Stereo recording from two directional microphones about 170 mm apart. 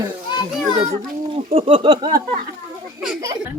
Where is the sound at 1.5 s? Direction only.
30° right (ahead or behind).